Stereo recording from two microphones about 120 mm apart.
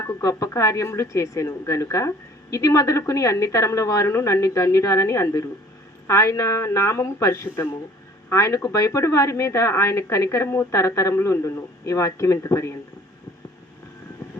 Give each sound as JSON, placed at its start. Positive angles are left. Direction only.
{"t": 0.0, "sound": "speech", "side_deg": 25}